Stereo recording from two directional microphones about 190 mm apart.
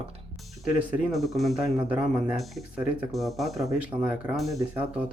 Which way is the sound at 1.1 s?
Centre (ahead or behind).